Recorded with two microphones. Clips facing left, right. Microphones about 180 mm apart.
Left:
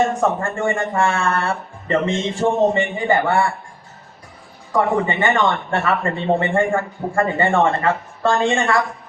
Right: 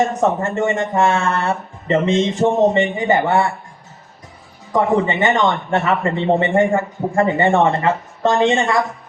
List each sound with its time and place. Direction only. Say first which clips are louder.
0.1 s a man's voice: right 2 dB; 20° right (ahead or behind)
4.7 s a man's voice: right 2 dB; 20° right (ahead or behind)